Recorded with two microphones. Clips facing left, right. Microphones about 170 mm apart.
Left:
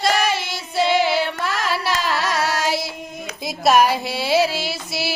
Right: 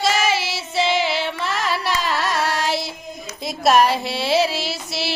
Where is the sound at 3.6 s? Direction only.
Centre (ahead or behind).